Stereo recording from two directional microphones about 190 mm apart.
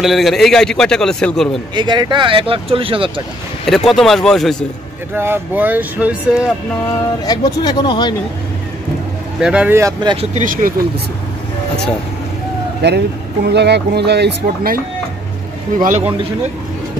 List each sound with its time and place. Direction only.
0.0 s a man's voice: centre (ahead or behind)
1.8 s speech: 25° right (ahead or behind)
3.6 s a man's voice: centre (ahead or behind)
5.1 s speech: 10° right (ahead or behind)
7.2 s speech: 20° left (ahead or behind)
9.4 s speech: 5° right (ahead or behind)
10.3 s speech: 45° right (ahead or behind)
12.8 s speech: 60° right (ahead or behind)